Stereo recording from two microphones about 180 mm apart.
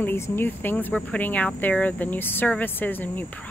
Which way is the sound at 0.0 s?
10° left (ahead or behind).